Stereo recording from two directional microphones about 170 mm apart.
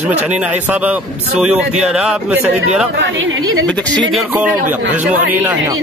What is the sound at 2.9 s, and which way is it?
Speech, 90° right.